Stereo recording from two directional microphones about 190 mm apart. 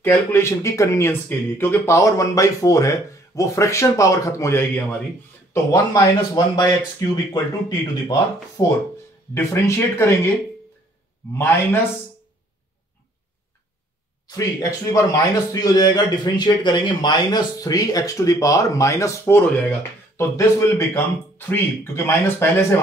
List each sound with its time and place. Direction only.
0.0 s a man's voice: 10° left (ahead or behind)
14.2 s a man's voice: 15° left (ahead or behind)